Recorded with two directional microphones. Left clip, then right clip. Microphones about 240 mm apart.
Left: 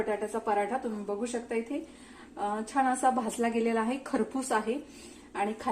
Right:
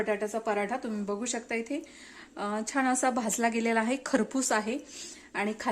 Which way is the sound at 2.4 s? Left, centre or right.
Right.